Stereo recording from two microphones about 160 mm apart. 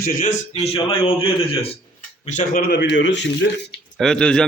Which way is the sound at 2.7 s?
90° left.